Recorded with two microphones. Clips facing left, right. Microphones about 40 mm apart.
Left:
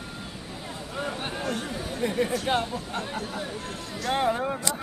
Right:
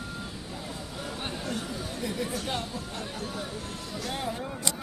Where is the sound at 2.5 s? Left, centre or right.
Left.